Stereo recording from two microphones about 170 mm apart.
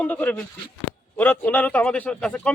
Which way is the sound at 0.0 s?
10° left (ahead or behind).